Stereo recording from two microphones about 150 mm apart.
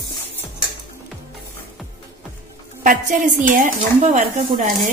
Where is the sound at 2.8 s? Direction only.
65° right (ahead or behind).